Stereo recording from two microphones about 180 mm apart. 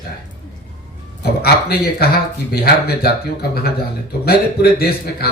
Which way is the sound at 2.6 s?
60° left (ahead or behind).